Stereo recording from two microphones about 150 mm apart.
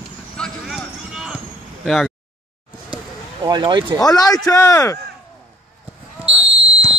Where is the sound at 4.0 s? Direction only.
25° left (ahead or behind).